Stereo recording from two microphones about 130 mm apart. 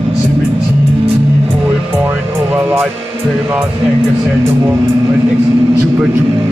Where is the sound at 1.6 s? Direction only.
15° right (ahead or behind).